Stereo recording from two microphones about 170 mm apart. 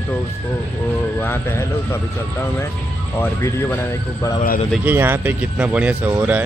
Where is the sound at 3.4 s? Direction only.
15° left (ahead or behind).